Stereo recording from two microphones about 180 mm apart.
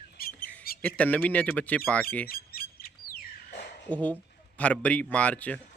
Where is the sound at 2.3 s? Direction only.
55° left (ahead or behind).